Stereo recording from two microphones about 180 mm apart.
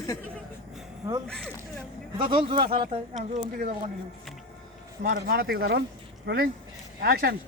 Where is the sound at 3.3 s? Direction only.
45° right (ahead or behind).